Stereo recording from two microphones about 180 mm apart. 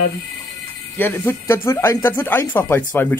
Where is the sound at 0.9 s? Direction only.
10° left (ahead or behind).